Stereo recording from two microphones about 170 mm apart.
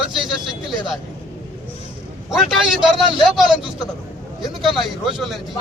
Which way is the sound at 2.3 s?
Centre (ahead or behind).